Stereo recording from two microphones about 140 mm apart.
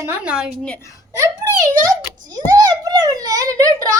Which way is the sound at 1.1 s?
25° right (ahead or behind).